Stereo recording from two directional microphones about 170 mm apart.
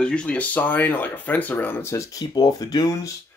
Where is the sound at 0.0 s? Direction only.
5° left (ahead or behind).